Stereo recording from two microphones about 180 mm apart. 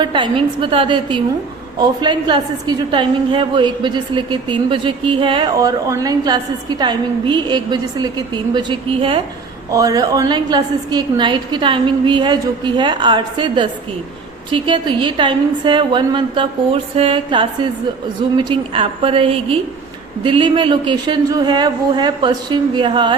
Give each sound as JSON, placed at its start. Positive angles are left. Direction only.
{"t": 0.0, "sound": "a woman's voice", "side_deg": -25}
{"t": 9.7, "sound": "a woman's voice", "side_deg": -20}